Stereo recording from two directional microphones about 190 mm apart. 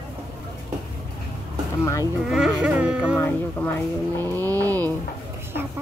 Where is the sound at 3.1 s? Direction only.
10° left (ahead or behind).